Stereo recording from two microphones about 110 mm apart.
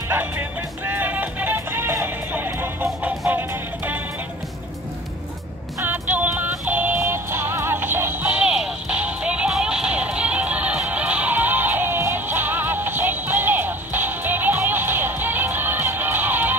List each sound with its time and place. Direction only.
0.1 s music: 20° right (ahead or behind)
5.8 s music: 15° right (ahead or behind)